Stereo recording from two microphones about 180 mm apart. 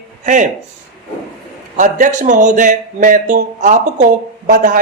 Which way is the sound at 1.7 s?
45° right (ahead or behind).